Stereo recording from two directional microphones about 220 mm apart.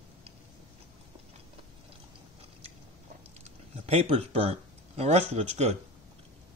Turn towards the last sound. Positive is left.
turn(degrees=-30)  # may be behind; listen again after turning